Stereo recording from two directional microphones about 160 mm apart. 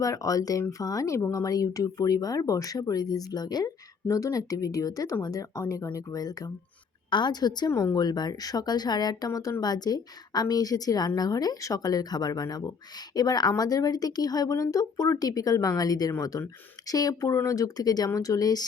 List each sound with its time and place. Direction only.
0.0 s speech: 20° left (ahead or behind)